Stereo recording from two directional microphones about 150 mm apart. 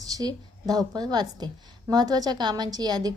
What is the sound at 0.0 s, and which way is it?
A woman's voice, 25° right (ahead or behind).